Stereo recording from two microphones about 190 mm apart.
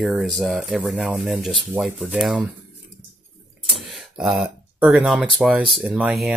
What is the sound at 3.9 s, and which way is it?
Speech, centre (ahead or behind).